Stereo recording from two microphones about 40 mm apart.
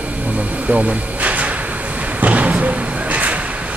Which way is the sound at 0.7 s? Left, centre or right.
Right.